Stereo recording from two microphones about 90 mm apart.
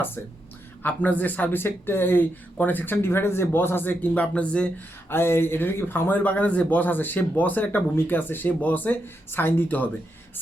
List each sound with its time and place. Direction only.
0.8 s speech: 20° left (ahead or behind)
5.0 s speech: 25° left (ahead or behind)